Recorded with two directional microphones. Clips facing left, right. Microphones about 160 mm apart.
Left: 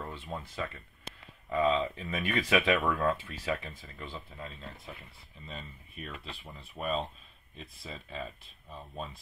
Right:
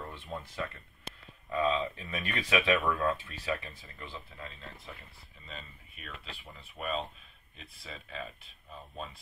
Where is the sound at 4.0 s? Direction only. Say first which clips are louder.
Left 2 dB; 15° left (ahead or behind).